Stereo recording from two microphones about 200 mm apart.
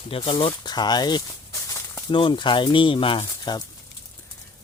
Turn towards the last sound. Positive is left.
turn(degrees=25)  # may be behind; listen again after turning